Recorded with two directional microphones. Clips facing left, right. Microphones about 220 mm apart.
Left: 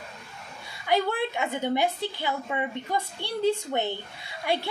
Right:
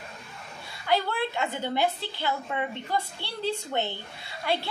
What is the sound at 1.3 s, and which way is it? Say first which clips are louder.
A woman's voice: left 2 dB; 15° left (ahead or behind).